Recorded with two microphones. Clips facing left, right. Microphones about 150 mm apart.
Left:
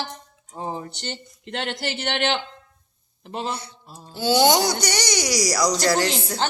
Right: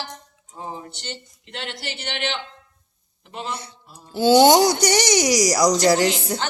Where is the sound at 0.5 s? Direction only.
30° left (ahead or behind).